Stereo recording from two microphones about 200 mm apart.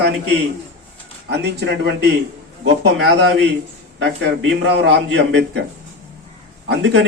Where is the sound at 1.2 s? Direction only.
55° right (ahead or behind).